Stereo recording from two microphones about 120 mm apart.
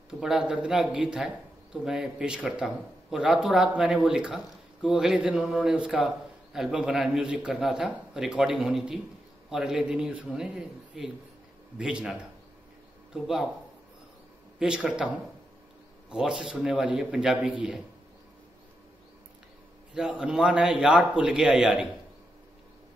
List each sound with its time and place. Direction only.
0.1 s a man's voice: 5° right (ahead or behind)
14.6 s speech: 5° right (ahead or behind)
16.1 s a man's voice: 5° right (ahead or behind)
19.9 s speech: 5° right (ahead or behind)